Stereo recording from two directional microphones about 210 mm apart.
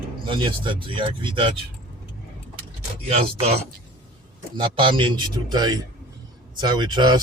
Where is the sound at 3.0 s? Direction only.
30° right (ahead or behind).